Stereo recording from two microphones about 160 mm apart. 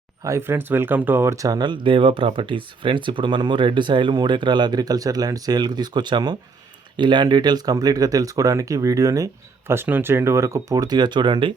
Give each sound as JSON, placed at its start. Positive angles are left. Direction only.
{"t": 0.3, "sound": "speech", "side_deg": -15}